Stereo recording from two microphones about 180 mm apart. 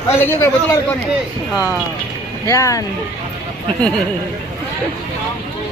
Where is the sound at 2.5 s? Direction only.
15° left (ahead or behind).